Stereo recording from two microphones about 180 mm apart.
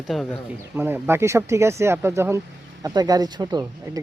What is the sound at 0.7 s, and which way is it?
Speech, 10° right (ahead or behind).